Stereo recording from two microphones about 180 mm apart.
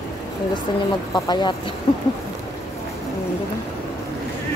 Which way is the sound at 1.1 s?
25° left (ahead or behind).